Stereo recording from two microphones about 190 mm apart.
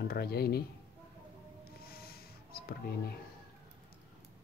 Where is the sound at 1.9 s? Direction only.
55° left (ahead or behind).